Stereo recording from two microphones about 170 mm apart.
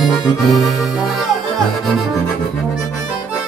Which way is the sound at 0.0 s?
Centre (ahead or behind).